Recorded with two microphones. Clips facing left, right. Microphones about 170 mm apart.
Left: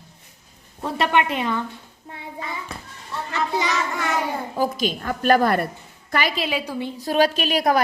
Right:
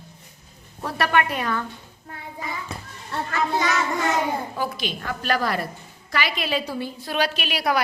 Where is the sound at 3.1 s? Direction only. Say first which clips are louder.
Right 2 dB; 65° right (ahead or behind).